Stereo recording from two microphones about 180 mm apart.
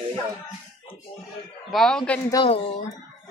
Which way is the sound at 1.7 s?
Centre (ahead or behind).